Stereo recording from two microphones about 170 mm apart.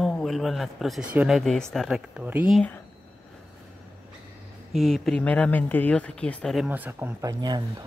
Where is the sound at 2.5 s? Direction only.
10° left (ahead or behind).